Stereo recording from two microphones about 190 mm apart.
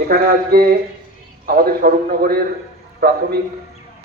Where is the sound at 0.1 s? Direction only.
55° right (ahead or behind).